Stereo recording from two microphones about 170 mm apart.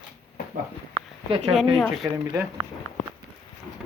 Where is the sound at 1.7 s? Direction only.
Centre (ahead or behind).